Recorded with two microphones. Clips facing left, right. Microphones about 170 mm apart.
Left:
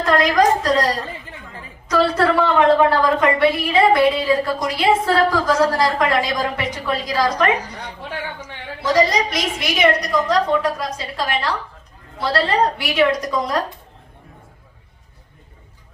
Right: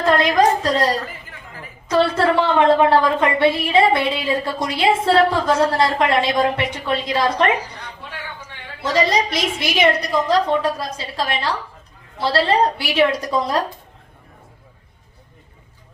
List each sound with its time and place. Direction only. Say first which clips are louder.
0.0 s a woman's voice: even; 30° right (ahead or behind)
1.0 s chatter: left 2 dB; 30° left (ahead or behind)
2.0 s a woman's voice: even; 30° right (ahead or behind)
8.8 s a woman's voice: left 1 dB; 30° right (ahead or behind)